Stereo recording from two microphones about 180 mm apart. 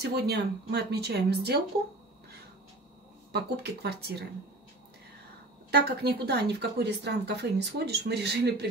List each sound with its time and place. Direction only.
0.0 s speech: 65° right (ahead or behind)
3.3 s speech: 65° right (ahead or behind)
5.7 s speech: 60° right (ahead or behind)